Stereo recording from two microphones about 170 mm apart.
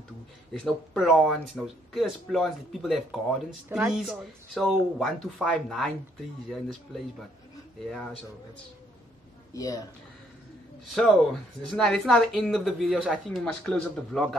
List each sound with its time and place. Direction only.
0.5 s speech: centre (ahead or behind)
3.6 s speech: 15° right (ahead or behind)
3.9 s speech: centre (ahead or behind)
9.5 s speech: 20° left (ahead or behind)
10.9 s speech: centre (ahead or behind)